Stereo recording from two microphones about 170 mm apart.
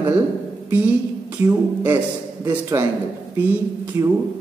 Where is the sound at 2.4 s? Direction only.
20° right (ahead or behind).